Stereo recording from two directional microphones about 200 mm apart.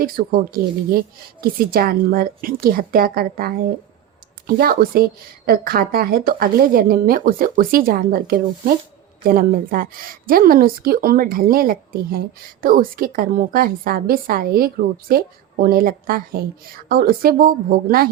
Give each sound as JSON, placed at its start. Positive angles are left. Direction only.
{"t": 0.0, "sound": "a woman's voice", "side_deg": -45}